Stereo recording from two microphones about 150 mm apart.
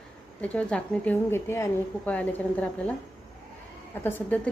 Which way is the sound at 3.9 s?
15° left (ahead or behind).